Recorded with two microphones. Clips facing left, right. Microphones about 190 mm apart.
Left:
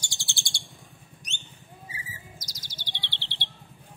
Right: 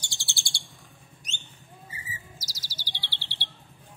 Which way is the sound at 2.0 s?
5° right (ahead or behind).